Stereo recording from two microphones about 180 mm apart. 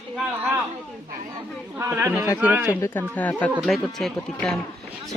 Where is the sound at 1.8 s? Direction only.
15° right (ahead or behind).